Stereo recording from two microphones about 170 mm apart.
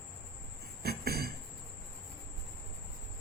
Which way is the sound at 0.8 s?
65° right (ahead or behind).